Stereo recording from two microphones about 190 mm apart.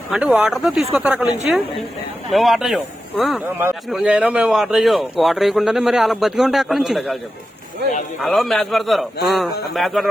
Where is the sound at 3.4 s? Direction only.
10° right (ahead or behind).